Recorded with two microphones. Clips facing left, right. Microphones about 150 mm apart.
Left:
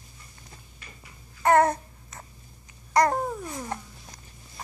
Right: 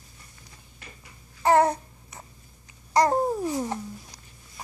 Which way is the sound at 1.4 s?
15° right (ahead or behind).